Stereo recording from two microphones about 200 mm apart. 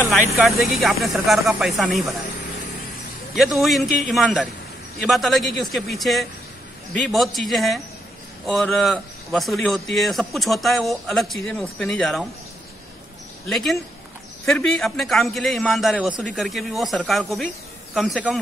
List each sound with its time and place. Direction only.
0.4 s a man's voice: centre (ahead or behind)
3.3 s a man's voice: centre (ahead or behind)
5.0 s a man's voice: centre (ahead or behind)
13.5 s a man's voice: centre (ahead or behind)